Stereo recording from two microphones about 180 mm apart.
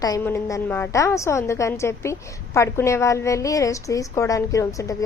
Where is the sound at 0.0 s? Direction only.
15° left (ahead or behind).